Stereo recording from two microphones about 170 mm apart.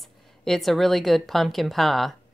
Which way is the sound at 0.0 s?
Centre (ahead or behind).